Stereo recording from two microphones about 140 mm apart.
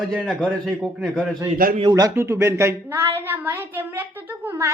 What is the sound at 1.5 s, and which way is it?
Speech, 90° right.